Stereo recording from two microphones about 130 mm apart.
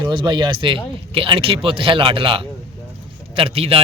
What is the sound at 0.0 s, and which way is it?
A man's voice, 35° right (ahead or behind).